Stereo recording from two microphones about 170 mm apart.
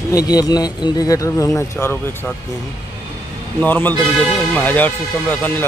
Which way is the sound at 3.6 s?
10° left (ahead or behind).